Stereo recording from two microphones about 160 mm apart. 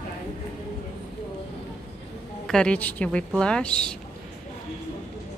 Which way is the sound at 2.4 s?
5° left (ahead or behind).